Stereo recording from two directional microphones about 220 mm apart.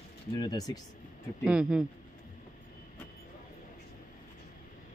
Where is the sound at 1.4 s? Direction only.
5° right (ahead or behind).